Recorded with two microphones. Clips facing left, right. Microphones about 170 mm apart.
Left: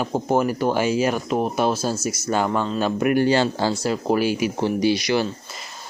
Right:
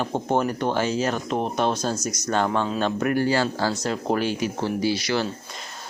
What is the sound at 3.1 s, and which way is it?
Speech, 20° left (ahead or behind).